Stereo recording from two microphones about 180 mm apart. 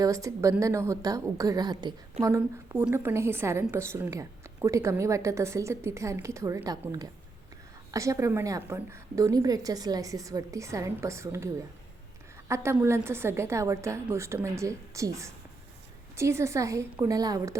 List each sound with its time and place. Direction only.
0.0 s a woman's voice: 20° right (ahead or behind)
12.5 s a woman's voice: 15° right (ahead or behind)